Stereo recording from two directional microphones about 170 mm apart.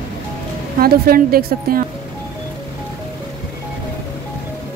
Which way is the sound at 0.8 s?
60° right (ahead or behind).